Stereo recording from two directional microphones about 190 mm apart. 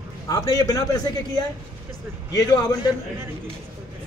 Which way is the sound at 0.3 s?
20° left (ahead or behind).